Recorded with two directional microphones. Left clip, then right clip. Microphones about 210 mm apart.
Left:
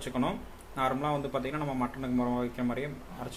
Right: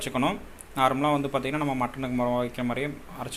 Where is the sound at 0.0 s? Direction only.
15° right (ahead or behind).